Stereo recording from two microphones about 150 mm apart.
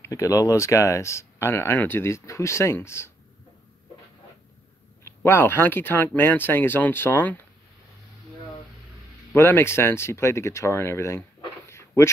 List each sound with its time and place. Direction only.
0.0 s speech: 20° left (ahead or behind)
5.0 s speech: 15° left (ahead or behind)
9.3 s speech: 15° left (ahead or behind)